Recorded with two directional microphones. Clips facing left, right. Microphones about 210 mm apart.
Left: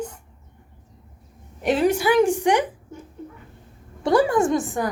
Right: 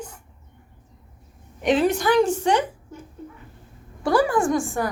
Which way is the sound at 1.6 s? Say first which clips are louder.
Even; 10° left (ahead or behind).